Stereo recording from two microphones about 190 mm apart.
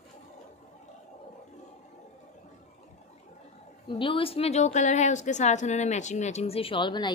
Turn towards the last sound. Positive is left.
turn(degrees=25)  # may be behind; listen again after turning